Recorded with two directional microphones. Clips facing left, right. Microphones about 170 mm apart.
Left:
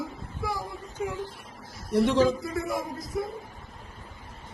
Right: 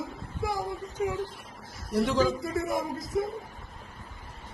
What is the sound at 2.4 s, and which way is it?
Speech, 45° right (ahead or behind).